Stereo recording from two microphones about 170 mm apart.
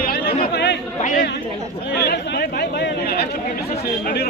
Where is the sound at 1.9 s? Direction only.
75° left (ahead or behind).